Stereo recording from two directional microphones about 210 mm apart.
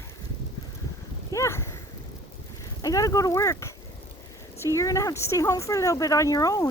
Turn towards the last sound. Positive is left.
turn(degrees=15)  # may be behind; listen again after turning